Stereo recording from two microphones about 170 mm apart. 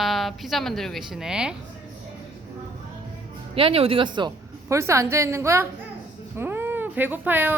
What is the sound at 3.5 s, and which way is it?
A woman's voice, 35° right (ahead or behind).